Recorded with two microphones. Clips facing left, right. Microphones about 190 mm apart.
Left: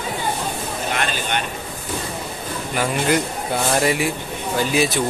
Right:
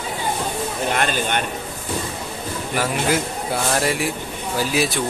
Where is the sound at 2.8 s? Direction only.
5° right (ahead or behind).